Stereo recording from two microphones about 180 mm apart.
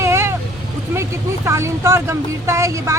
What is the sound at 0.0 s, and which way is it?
Vehicle, 15° right (ahead or behind).